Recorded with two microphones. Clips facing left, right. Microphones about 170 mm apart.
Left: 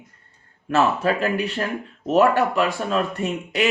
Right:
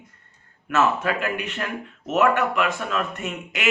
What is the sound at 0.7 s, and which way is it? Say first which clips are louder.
Speech: left 2 dB; 30° left (ahead or behind).